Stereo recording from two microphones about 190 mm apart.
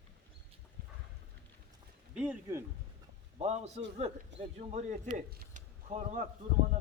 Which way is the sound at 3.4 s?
35° right (ahead or behind).